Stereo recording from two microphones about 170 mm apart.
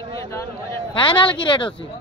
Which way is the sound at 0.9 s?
30° left (ahead or behind).